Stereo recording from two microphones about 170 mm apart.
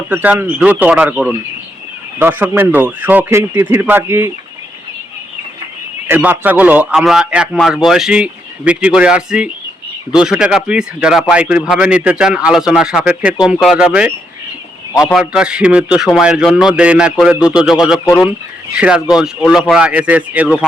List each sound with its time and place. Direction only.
0.1 s a man's voice: 10° right (ahead or behind)
6.1 s a man's voice: 10° right (ahead or behind)
15.1 s a man's voice: 5° right (ahead or behind)
18.0 s speech: 20° left (ahead or behind)
18.8 s a man's voice: 5° right (ahead or behind)